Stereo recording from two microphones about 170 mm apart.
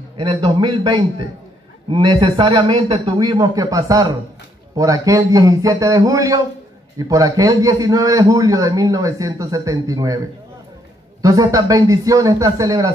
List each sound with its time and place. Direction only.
0.2 s a man's voice: 30° right (ahead or behind)
11.2 s a man's voice: 20° right (ahead or behind)